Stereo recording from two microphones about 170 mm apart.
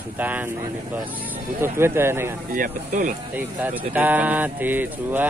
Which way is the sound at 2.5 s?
55° right (ahead or behind).